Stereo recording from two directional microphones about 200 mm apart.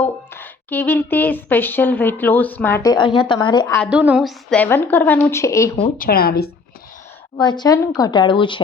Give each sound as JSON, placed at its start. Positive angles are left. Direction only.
{"t": 0.0, "sound": "a woman's voice", "side_deg": 10}
{"t": 3.8, "sound": "a woman's voice", "side_deg": -5}
{"t": 6.0, "sound": "speech", "side_deg": 50}
{"t": 7.3, "sound": "a woman's voice", "side_deg": 20}